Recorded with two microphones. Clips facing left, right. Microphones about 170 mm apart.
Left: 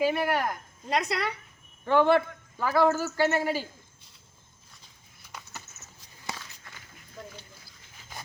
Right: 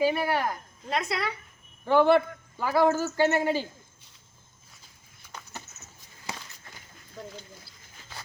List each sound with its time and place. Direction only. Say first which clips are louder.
0.0 s a man's voice: right 1 dB; centre (ahead or behind); by 3.7 s 20° right (ahead or behind)